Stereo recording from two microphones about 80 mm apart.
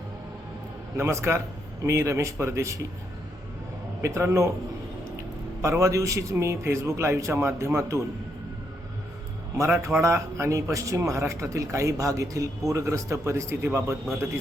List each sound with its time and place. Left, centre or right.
0.9 s a man's voice: right
4.0 s a man's voice: right
5.6 s a man's voice: right
9.6 s a man's voice: right